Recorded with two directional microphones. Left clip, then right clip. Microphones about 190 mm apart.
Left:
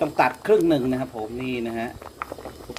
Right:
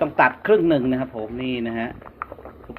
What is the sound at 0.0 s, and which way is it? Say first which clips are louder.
Speech: right 3 dB; 10° left (ahead or behind).